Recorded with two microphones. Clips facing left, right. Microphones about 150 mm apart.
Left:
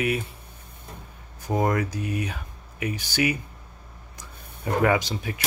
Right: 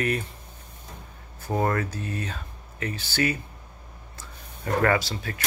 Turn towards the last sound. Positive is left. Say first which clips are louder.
# left 1 dB
turn(degrees=15)  # may be behind; listen again after turning